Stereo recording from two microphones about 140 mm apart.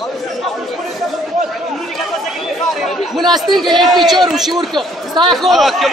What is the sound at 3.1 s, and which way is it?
Speech, centre (ahead or behind).